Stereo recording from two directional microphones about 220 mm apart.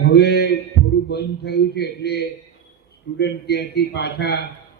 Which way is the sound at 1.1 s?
50° left (ahead or behind).